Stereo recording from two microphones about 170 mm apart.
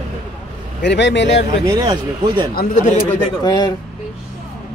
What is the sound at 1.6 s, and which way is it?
Speech, 20° right (ahead or behind).